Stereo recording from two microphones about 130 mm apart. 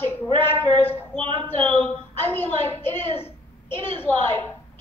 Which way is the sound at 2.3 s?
15° left (ahead or behind).